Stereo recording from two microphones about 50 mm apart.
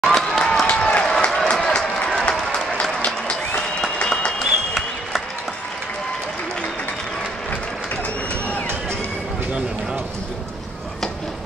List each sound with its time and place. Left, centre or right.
0.0 s a sound: centre
2.2 s applause: centre
4.4 s applause: centre